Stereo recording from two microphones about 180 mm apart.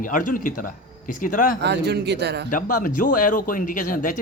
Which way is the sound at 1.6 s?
70° right (ahead or behind).